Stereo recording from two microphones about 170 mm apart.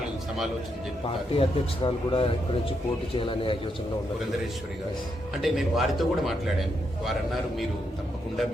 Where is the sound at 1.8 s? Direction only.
30° left (ahead or behind).